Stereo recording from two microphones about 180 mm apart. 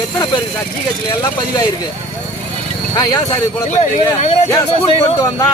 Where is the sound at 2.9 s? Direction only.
20° left (ahead or behind).